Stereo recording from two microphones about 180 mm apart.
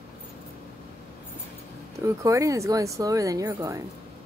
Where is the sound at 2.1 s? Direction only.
15° right (ahead or behind).